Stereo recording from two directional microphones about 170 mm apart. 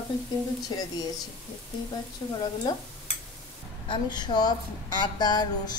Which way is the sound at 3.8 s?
25° left (ahead or behind).